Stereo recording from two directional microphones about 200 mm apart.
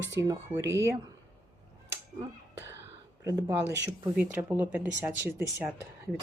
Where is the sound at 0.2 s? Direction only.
10° right (ahead or behind).